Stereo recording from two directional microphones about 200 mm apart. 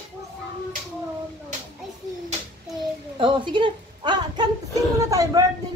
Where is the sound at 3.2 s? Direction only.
25° right (ahead or behind).